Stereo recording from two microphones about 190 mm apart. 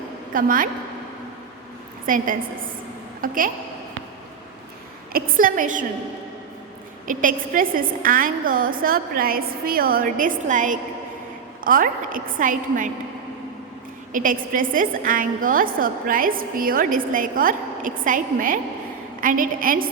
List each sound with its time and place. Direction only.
0.3 s a woman's voice: 45° right (ahead or behind)
2.0 s a woman's voice: 45° right (ahead or behind)
5.1 s a woman's voice: 50° right (ahead or behind)
7.1 s a woman's voice: 45° right (ahead or behind)
14.1 s a woman's voice: 45° right (ahead or behind)